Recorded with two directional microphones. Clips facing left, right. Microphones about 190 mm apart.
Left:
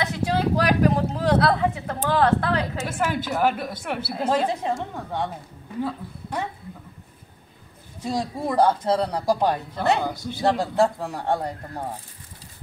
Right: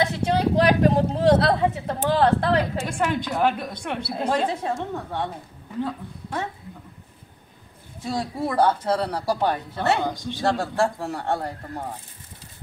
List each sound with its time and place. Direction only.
0.0 s a sound: 25° right (ahead or behind)
2.9 s a woman's voice: 5° left (ahead or behind)
8.1 s speech: 15° left (ahead or behind)
10.4 s speech: 20° left (ahead or behind)